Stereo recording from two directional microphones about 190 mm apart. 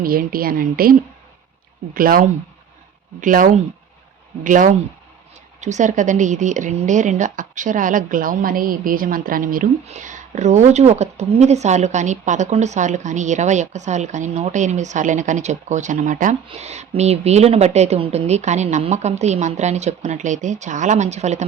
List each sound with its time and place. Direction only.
0.0 s a woman's voice: 50° right (ahead or behind)